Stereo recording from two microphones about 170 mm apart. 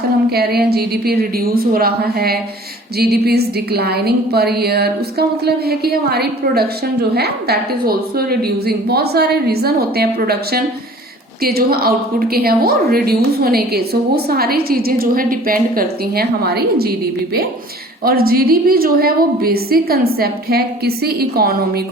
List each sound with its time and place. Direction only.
0.3 s a woman's voice: 65° right (ahead or behind)
18.0 s a woman's voice: 60° right (ahead or behind)